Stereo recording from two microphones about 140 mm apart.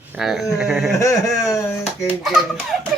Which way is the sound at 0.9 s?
20° left (ahead or behind).